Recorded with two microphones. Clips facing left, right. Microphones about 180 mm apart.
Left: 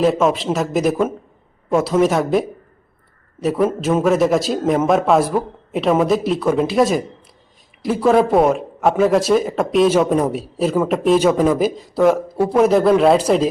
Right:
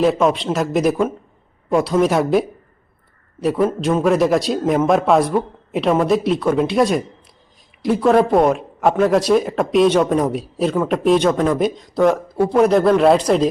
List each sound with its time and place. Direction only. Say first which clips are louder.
0.0 s speech: even; centre (ahead or behind)